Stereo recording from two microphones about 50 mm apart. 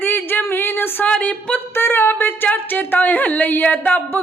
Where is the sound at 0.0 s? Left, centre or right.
Left.